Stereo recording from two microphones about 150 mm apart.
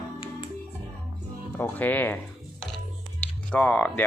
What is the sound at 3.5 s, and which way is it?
Speech, 10° left (ahead or behind).